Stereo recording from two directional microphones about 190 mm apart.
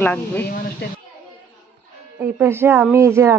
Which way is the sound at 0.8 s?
60° left (ahead or behind).